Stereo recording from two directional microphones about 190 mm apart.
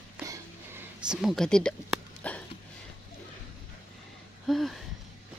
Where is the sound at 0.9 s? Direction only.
5° right (ahead or behind).